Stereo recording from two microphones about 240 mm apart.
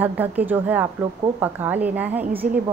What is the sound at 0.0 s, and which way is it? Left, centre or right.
A woman's voice, centre.